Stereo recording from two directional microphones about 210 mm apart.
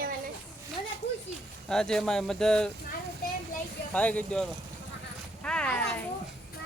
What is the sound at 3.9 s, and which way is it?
Speech, 5° left (ahead or behind).